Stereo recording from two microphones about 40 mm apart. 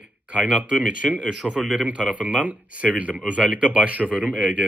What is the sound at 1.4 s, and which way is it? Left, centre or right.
Speech, centre.